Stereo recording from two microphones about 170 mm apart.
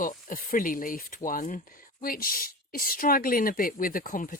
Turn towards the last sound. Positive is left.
turn(degrees=55)  # may be behind; listen again after turning